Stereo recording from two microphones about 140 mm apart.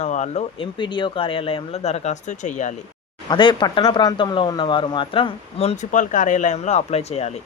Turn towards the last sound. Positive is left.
turn(degrees=50)  # may be behind; listen again after turning